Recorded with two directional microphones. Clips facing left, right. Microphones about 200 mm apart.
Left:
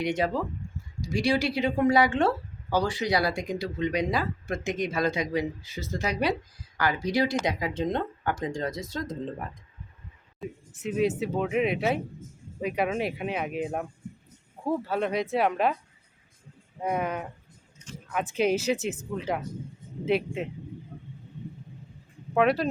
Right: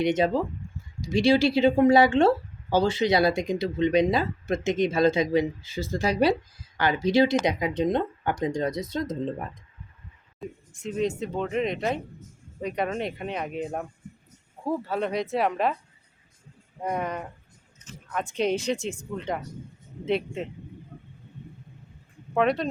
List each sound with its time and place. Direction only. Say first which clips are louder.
0.0 s speech: right 4 dB; 20° right (ahead or behind)
10.4 s speech: left 1 dB; 5° left (ahead or behind)
16.8 s speech: left 1 dB; 5° left (ahead or behind)
22.4 s speech: left 1 dB; 5° left (ahead or behind)